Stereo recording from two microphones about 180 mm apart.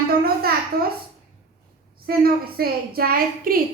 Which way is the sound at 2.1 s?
55° right (ahead or behind).